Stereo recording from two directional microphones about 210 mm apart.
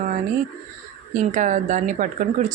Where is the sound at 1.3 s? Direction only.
35° right (ahead or behind).